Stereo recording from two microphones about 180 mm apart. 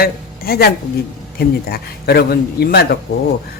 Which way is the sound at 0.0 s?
55° left (ahead or behind).